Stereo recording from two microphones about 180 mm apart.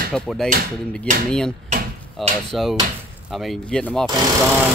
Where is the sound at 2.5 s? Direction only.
Centre (ahead or behind).